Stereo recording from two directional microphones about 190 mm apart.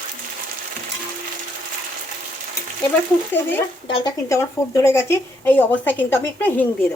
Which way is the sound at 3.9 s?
15° left (ahead or behind).